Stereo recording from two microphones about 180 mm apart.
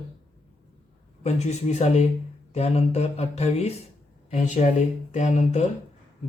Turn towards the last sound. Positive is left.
turn(degrees=40)  # may be behind; listen again after turning